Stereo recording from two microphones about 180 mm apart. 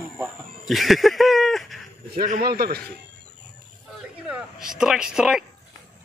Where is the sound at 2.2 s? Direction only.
55° right (ahead or behind).